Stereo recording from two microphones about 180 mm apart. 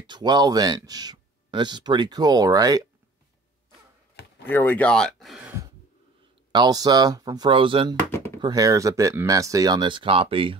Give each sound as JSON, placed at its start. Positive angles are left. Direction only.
{"t": 0.0, "sound": "speech", "side_deg": -25}
{"t": 4.5, "sound": "speech", "side_deg": 10}
{"t": 6.5, "sound": "speech", "side_deg": -20}
{"t": 7.9, "sound": "speech", "side_deg": 10}
{"t": 8.4, "sound": "speech", "side_deg": -20}